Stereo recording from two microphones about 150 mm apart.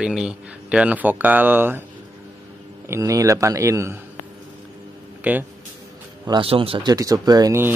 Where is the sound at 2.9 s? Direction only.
20° right (ahead or behind).